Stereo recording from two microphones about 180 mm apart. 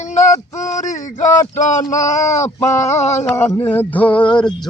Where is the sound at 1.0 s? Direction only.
45° left (ahead or behind).